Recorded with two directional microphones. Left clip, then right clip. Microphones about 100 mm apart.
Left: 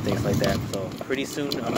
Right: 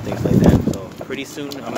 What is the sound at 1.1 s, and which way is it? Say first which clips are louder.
Speech: left 1 dB; 25° right (ahead or behind).